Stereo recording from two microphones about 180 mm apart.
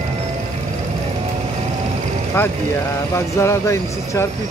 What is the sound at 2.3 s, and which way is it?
Speech, 10° left (ahead or behind).